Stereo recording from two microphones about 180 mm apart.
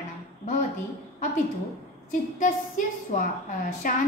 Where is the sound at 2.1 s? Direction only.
45° left (ahead or behind).